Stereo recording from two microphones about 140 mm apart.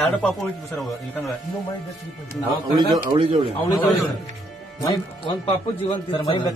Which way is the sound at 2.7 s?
30° right (ahead or behind).